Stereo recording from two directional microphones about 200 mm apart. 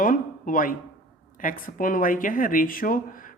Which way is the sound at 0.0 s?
45° left (ahead or behind).